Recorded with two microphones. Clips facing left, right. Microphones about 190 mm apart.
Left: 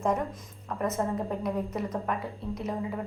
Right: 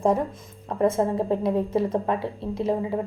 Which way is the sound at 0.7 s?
30° right (ahead or behind).